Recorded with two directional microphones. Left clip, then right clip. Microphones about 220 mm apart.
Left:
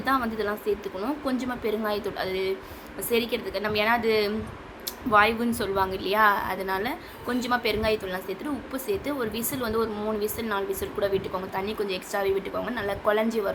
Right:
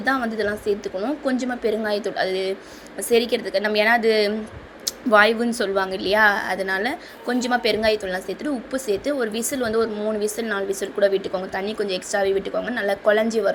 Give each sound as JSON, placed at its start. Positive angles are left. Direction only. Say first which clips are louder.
{"t": 0.0, "sound": "a woman's voice", "louder": "right 4 dB", "side_deg": -15}